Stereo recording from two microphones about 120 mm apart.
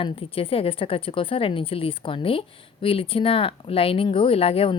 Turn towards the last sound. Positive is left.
turn(degrees=55)  # may be behind; listen again after turning